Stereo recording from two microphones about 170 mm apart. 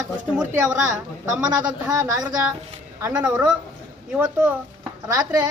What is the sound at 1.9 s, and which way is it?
A woman's voice, 20° right (ahead or behind).